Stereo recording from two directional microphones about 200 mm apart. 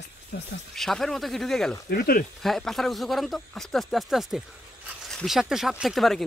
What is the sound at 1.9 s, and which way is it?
Speech, 45° left (ahead or behind).